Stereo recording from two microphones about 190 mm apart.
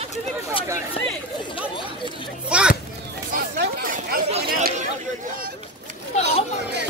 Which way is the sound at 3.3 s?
55° right (ahead or behind).